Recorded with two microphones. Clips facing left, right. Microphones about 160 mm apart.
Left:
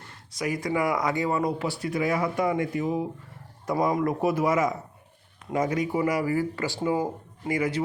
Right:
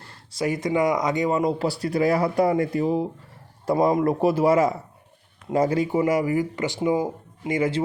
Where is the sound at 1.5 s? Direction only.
35° right (ahead or behind); by 7.5 s 15° right (ahead or behind).